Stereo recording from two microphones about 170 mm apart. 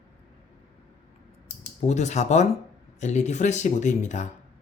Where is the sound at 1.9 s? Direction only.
45° left (ahead or behind).